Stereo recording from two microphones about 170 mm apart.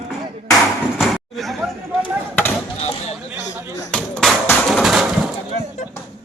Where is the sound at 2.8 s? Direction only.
40° left (ahead or behind).